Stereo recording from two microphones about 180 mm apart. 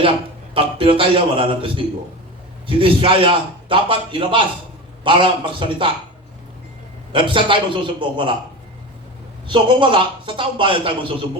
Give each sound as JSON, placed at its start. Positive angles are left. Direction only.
{"t": 0.5, "sound": "a man's voice", "side_deg": -30}
{"t": 7.1, "sound": "a man's voice", "side_deg": -30}
{"t": 9.5, "sound": "a man's voice", "side_deg": -30}